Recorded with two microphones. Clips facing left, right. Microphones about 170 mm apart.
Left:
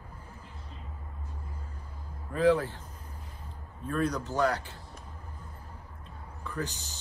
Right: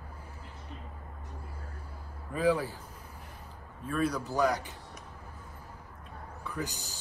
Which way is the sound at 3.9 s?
10° right (ahead or behind).